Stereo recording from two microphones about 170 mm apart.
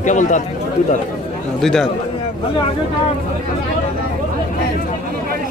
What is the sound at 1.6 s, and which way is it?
Speech, centre (ahead or behind).